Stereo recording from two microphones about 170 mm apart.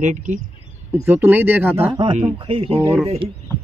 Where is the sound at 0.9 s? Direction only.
15° right (ahead or behind).